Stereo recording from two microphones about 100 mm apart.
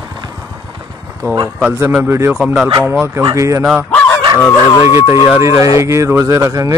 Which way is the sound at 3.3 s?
30° right (ahead or behind).